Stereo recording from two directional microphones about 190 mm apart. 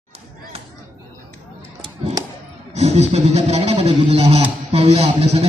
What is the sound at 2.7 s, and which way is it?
Speech, 35° right (ahead or behind).